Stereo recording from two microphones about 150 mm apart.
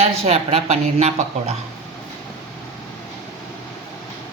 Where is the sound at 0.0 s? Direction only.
45° right (ahead or behind).